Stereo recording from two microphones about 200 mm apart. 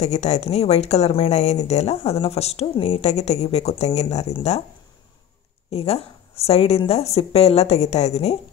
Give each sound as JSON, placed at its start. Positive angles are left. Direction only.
{"t": 0.0, "sound": "a woman's voice", "side_deg": 35}
{"t": 5.7, "sound": "a woman's voice", "side_deg": 30}